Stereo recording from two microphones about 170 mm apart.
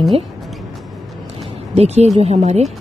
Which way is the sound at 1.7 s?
40° right (ahead or behind).